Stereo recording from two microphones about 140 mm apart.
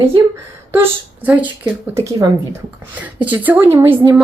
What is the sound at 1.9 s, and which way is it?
A woman's voice, 20° right (ahead or behind).